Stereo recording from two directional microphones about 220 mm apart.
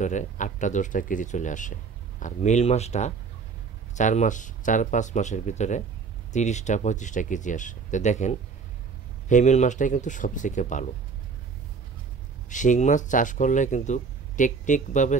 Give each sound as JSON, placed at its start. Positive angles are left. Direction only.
{"t": 0.0, "sound": "speech", "side_deg": 35}
{"t": 12.4, "sound": "speech", "side_deg": 35}